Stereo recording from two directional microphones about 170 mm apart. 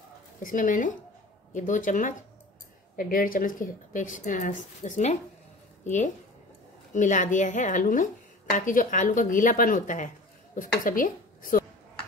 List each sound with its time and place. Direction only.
0.4 s a woman's voice: 50° left (ahead or behind)